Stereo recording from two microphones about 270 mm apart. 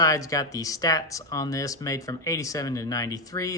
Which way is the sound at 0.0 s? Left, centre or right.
Centre.